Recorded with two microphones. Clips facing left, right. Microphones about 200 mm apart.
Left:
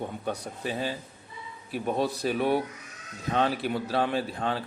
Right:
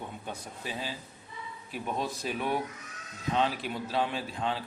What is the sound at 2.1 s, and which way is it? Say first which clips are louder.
Speech: left 6 dB; 35° left (ahead or behind).